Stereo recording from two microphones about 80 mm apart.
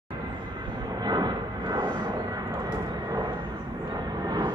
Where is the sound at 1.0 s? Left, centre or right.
Right.